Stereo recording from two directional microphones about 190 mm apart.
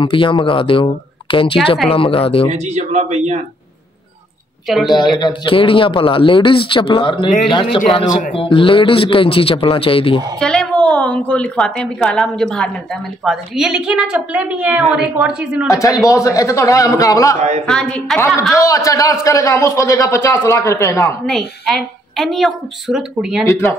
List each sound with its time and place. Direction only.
0.0 s a man's voice: 25° left (ahead or behind)
2.5 s speech: 35° right (ahead or behind)
4.6 s a woman's voice: centre (ahead or behind)
5.2 s a man's voice: 25° left (ahead or behind)
10.4 s a woman's voice: 5° left (ahead or behind)
15.7 s speech: 15° left (ahead or behind)
17.6 s a woman's voice: 5° left (ahead or behind)
18.6 s speech: 15° left (ahead or behind)
21.3 s a woman's voice: centre (ahead or behind)
23.4 s speech: 15° left (ahead or behind)